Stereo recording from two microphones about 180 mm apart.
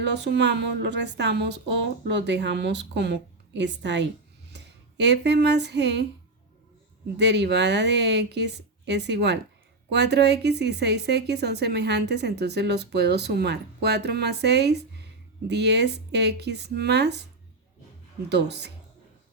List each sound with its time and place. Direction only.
0.0 s a woman's voice: 70° right (ahead or behind)
7.2 s a woman's voice: 70° right (ahead or behind)
18.3 s a woman's voice: 70° right (ahead or behind)